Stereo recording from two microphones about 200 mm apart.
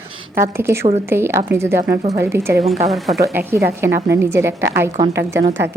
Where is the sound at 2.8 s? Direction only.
Centre (ahead or behind).